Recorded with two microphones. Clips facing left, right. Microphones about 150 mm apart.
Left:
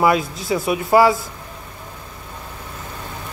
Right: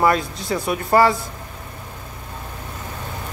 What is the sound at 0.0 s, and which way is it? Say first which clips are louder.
Speech: left 1 dB; 5° left (ahead or behind).